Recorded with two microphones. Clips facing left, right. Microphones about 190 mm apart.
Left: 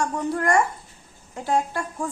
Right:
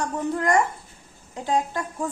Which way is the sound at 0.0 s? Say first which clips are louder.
Left 1 dB; 15° right (ahead or behind).